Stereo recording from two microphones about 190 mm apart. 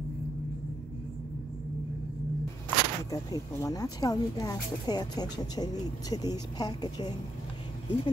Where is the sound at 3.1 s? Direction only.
20° left (ahead or behind).